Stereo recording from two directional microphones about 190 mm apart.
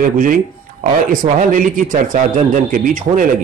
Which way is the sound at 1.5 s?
45° right (ahead or behind).